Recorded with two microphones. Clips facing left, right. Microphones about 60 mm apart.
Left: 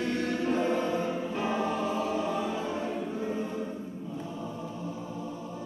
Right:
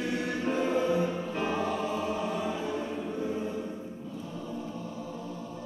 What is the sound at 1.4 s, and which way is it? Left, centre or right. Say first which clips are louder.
Music: even; centre.